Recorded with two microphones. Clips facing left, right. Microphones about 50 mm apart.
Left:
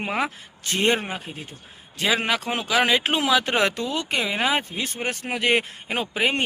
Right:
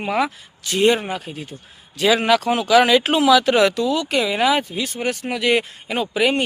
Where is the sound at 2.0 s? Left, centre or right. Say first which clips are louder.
Right 6 dB; centre.